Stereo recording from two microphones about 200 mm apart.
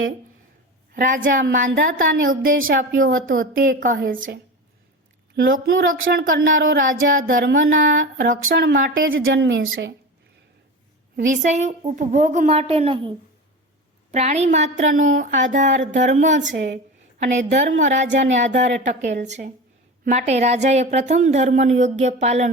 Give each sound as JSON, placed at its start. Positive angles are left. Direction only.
{"t": 0.9, "sound": "speech", "side_deg": -40}
{"t": 7.4, "sound": "speech", "side_deg": -60}
{"t": 8.3, "sound": "speech", "side_deg": -50}
{"t": 9.0, "sound": "speech", "side_deg": -75}
{"t": 11.3, "sound": "speech", "side_deg": -35}
{"t": 16.6, "sound": "speech", "side_deg": -60}
{"t": 17.2, "sound": "a woman's voice", "side_deg": -40}